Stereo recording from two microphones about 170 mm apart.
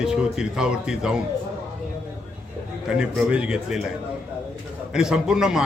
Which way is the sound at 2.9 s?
5° right (ahead or behind).